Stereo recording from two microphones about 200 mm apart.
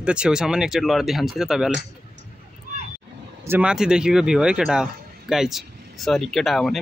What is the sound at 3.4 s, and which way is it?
Speech, 10° right (ahead or behind).